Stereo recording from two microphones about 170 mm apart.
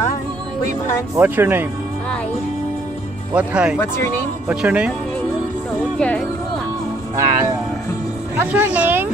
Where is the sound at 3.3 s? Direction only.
5° right (ahead or behind).